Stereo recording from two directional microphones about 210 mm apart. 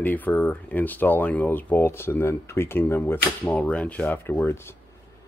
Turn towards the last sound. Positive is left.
turn(degrees=10)  # may be behind; listen again after turning